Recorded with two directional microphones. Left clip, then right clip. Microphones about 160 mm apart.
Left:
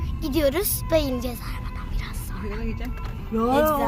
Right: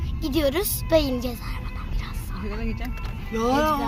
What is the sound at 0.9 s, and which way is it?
Speech, 15° right (ahead or behind).